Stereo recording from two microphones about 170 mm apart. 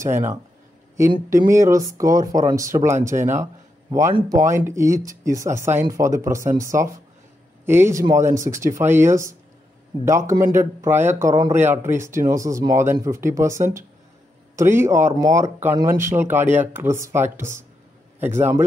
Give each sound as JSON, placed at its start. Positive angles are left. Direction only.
{"t": 0.0, "sound": "speech", "side_deg": -15}
{"t": 1.4, "sound": "speech", "side_deg": -20}
{"t": 4.1, "sound": "speech", "side_deg": -20}